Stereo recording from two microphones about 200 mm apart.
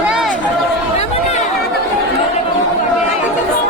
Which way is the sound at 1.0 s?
35° left (ahead or behind).